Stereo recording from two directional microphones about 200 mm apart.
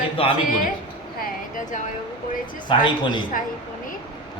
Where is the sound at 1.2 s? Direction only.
40° left (ahead or behind).